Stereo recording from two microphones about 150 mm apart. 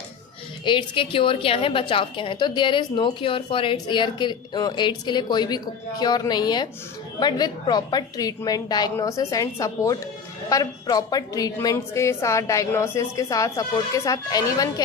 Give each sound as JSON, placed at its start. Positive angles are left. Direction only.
{"t": 0.6, "sound": "a woman's voice", "side_deg": 30}